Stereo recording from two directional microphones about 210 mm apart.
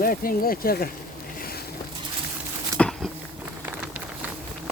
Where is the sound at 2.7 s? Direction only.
5° left (ahead or behind).